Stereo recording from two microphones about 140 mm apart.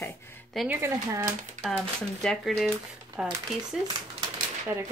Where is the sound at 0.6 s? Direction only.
15° right (ahead or behind).